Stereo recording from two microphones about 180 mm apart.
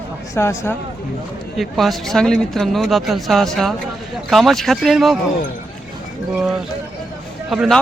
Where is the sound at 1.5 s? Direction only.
Centre (ahead or behind).